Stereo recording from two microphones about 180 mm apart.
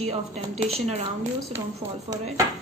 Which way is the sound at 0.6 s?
35° right (ahead or behind).